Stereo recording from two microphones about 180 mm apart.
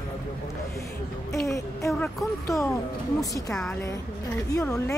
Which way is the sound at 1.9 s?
Centre (ahead or behind).